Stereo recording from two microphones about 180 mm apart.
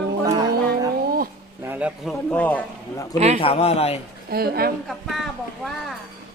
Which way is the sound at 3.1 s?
35° right (ahead or behind).